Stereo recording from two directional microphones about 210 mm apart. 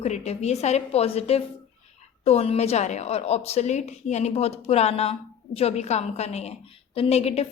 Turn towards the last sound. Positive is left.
turn(degrees=30)  # may be behind; listen again after turning